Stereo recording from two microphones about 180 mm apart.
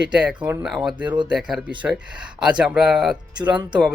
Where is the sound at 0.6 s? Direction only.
Centre (ahead or behind).